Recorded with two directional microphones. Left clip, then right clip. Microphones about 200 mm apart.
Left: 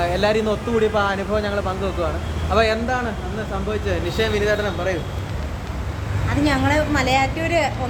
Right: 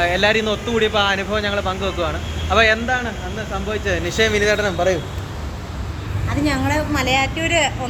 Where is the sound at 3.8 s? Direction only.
25° right (ahead or behind).